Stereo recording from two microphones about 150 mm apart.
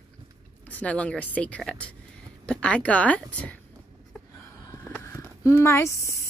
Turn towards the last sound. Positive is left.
turn(degrees=20)  # may be behind; listen again after turning